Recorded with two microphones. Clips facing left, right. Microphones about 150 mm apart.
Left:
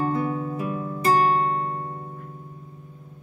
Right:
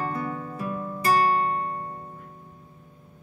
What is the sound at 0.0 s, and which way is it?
Music, 20° left (ahead or behind).